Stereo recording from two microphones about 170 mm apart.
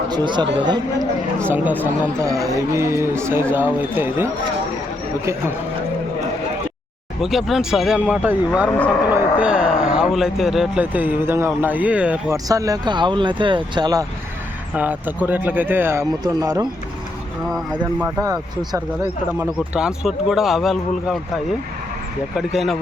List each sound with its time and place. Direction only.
0.1 s speech: 25° right (ahead or behind)
1.5 s speech: 10° right (ahead or behind)
7.2 s speech: centre (ahead or behind)
12.5 s speech: 20° right (ahead or behind)
14.8 s speech: 10° right (ahead or behind)
18.2 s speech: 20° right (ahead or behind)
19.4 s speech: 5° right (ahead or behind)
22.4 s speech: centre (ahead or behind)